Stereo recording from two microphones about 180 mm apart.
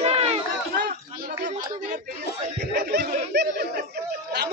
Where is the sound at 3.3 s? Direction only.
70° right (ahead or behind).